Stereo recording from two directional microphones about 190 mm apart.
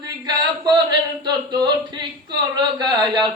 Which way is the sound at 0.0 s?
20° right (ahead or behind).